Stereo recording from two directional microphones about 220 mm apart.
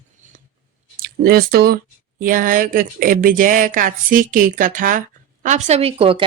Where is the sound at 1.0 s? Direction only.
45° right (ahead or behind); by 6.3 s 25° right (ahead or behind).